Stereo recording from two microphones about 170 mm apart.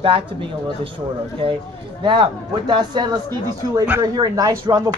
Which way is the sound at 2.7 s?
25° right (ahead or behind).